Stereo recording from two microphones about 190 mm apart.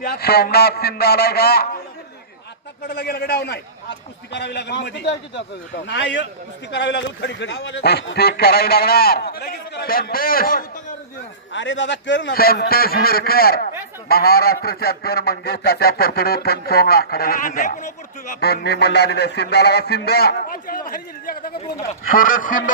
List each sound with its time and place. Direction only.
0.0 s speech: 55° left (ahead or behind)
2.8 s speech: 55° left (ahead or behind)
11.5 s goose: 75° left (ahead or behind); by 17.9 s 45° left (ahead or behind)
18.3 s speech: 60° left (ahead or behind)
22.0 s goose: 45° left (ahead or behind)